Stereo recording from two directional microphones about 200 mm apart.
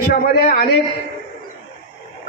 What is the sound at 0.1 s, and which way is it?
Speech, 50° left (ahead or behind).